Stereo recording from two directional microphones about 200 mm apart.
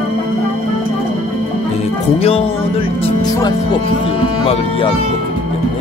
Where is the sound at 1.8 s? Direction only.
30° left (ahead or behind).